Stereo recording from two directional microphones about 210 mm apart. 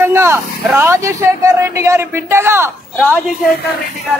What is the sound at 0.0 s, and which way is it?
A man's voice, 10° right (ahead or behind).